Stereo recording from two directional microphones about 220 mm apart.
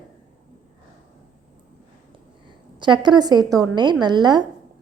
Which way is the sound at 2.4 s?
20° right (ahead or behind).